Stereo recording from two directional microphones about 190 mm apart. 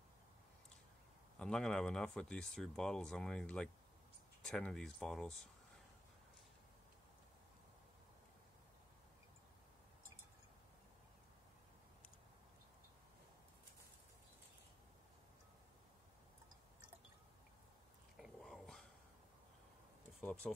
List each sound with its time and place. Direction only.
1.4 s speech: 5° left (ahead or behind)
18.1 s a sound: centre (ahead or behind)
20.4 s speech: 5° left (ahead or behind)